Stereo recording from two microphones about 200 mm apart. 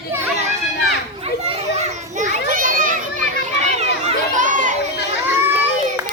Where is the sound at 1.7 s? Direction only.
40° right (ahead or behind).